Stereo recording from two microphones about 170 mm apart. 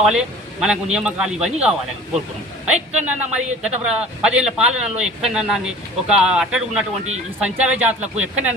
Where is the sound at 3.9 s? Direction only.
5° right (ahead or behind).